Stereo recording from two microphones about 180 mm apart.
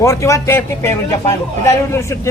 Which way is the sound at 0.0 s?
15° left (ahead or behind).